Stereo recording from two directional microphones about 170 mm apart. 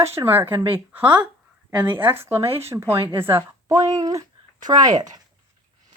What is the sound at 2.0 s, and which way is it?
Speech, 15° right (ahead or behind).